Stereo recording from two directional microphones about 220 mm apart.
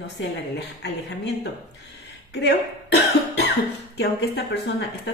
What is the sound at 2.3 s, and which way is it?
Speech, 50° left (ahead or behind).